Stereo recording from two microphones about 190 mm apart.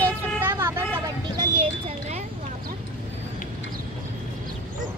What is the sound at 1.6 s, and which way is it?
Speech, 35° right (ahead or behind).